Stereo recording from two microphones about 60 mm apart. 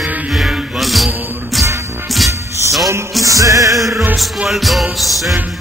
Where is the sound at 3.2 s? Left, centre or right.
Right.